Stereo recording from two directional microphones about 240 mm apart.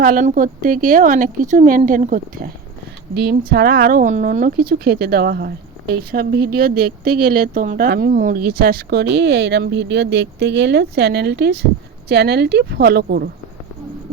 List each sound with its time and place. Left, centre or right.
0.0 s speech: right